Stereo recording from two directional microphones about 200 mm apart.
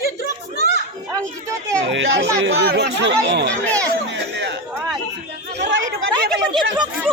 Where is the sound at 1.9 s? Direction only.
70° right (ahead or behind).